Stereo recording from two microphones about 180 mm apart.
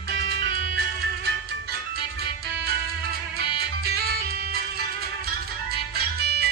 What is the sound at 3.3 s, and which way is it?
Music, 60° right (ahead or behind).